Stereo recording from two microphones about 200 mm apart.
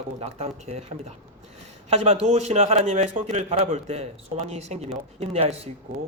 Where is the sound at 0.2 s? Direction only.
35° right (ahead or behind).